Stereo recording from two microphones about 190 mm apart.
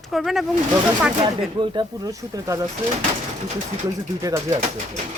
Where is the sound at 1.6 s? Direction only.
20° right (ahead or behind).